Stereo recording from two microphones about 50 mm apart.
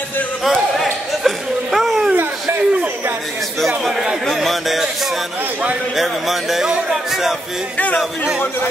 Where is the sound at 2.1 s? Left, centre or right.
Right.